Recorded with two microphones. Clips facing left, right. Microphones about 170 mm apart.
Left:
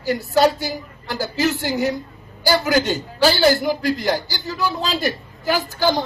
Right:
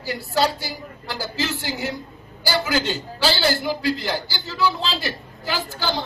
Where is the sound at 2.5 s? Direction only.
65° left (ahead or behind).